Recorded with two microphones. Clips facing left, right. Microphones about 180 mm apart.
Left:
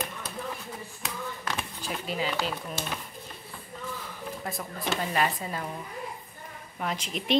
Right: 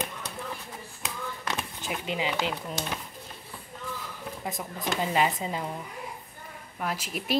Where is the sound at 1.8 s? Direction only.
15° right (ahead or behind).